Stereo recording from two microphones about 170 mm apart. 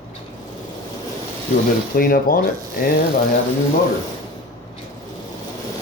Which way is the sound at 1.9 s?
55° left (ahead or behind).